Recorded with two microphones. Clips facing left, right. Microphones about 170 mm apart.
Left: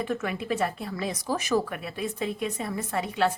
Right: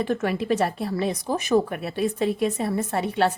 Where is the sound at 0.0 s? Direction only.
35° right (ahead or behind).